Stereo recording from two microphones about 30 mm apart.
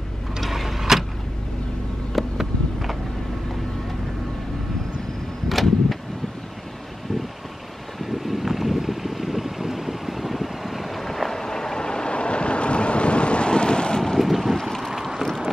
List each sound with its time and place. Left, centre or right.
0.4 s a sound: centre
2.1 s vehicle: centre
5.5 s vehicle: centre
8.0 s vehicle: centre
11.1 s vehicle: centre
11.4 s vehicle: left
14.2 s boat: centre
14.6 s wind: centre